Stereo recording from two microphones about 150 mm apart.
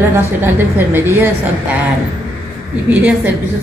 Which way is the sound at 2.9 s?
10° right (ahead or behind).